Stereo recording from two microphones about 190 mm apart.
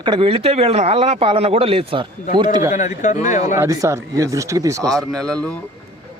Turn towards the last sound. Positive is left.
turn(degrees=5)  # may be behind; listen again after turning